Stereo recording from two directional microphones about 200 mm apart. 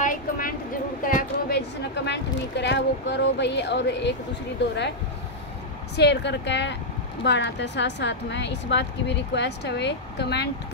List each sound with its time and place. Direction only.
0.0 s a sound: 40° left (ahead or behind)
2.0 s a woman's voice: 60° left (ahead or behind)
5.9 s a woman's voice: 60° left (ahead or behind)